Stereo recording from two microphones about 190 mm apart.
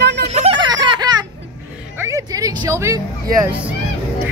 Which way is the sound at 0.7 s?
20° right (ahead or behind).